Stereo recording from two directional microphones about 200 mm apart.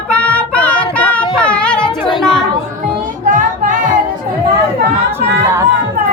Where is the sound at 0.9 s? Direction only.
5° left (ahead or behind).